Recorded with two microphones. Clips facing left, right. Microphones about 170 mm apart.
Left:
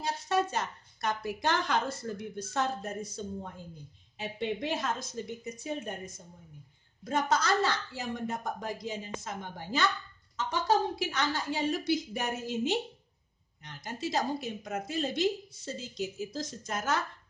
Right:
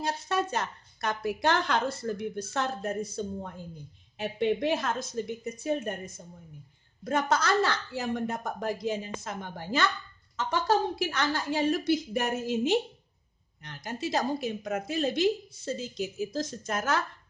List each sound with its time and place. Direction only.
0.0 s a woman's voice: 60° right (ahead or behind)
7.1 s a woman's voice: 60° right (ahead or behind)
11.1 s a woman's voice: 70° right (ahead or behind)
13.6 s a woman's voice: 65° right (ahead or behind)